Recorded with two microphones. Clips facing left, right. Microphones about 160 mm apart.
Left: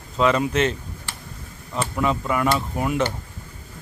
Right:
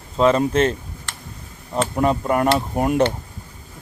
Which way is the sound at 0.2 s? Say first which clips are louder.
Right 3 dB; 35° right (ahead or behind).